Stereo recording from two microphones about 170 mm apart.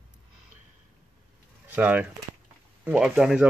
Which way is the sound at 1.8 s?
10° right (ahead or behind).